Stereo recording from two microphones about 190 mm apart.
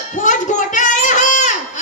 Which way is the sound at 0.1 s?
40° left (ahead or behind).